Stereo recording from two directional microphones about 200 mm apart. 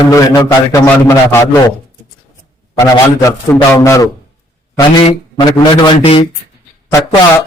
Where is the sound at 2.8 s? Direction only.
15° left (ahead or behind).